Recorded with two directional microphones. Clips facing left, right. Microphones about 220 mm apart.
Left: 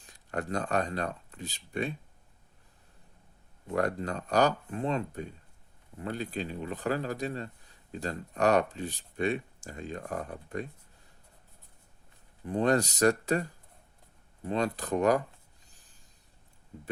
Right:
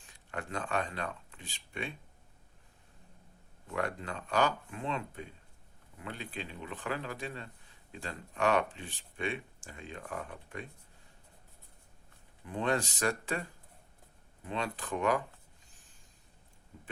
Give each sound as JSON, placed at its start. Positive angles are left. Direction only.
{"t": 0.0, "sound": "speech", "side_deg": 40}
{"t": 3.7, "sound": "speech", "side_deg": 40}
{"t": 12.5, "sound": "speech", "side_deg": 40}